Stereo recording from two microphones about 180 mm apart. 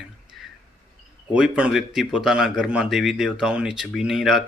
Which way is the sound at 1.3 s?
5° right (ahead or behind).